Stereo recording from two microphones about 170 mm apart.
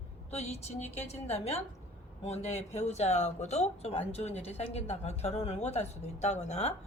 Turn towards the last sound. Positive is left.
turn(degrees=40)  # may be behind; listen again after turning